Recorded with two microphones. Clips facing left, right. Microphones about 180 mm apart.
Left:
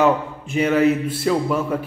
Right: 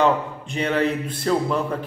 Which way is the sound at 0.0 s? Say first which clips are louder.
Left 2 dB; 5° left (ahead or behind).